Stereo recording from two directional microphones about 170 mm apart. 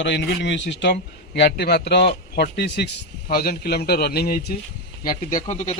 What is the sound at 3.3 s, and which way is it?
A man's voice, 65° left (ahead or behind).